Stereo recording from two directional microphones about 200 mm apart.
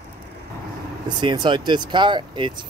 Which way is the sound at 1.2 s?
25° right (ahead or behind).